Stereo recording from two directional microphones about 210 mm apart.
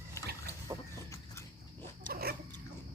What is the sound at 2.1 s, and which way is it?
Dog, 45° right (ahead or behind).